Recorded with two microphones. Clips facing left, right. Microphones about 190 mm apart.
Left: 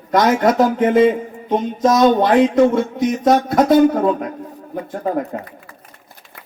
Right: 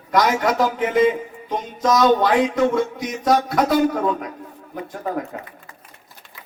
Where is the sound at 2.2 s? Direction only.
45° left (ahead or behind).